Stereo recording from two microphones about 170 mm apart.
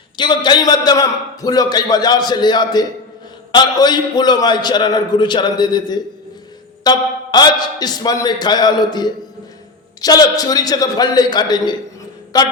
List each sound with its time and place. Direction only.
0.2 s a man's voice: 25° left (ahead or behind)